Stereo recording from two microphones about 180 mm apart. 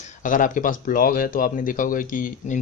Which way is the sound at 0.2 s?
45° left (ahead or behind).